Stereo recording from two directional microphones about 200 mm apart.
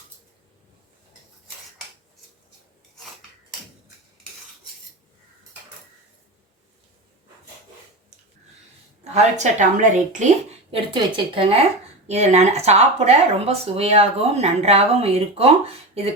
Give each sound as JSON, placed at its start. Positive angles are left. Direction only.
{"t": 9.1, "sound": "speech", "side_deg": -35}